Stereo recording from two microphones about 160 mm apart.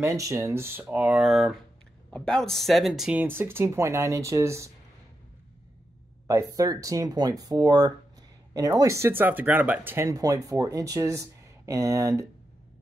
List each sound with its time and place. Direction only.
0.0 s speech: 20° right (ahead or behind)
6.2 s speech: 20° right (ahead or behind)